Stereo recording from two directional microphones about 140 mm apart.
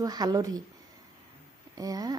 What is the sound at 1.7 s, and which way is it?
Speech, 25° right (ahead or behind).